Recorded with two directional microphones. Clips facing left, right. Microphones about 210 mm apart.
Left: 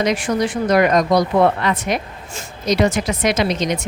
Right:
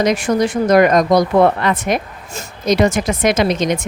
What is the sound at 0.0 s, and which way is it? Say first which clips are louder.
A woman's voice: right 3 dB; 45° right (ahead or behind).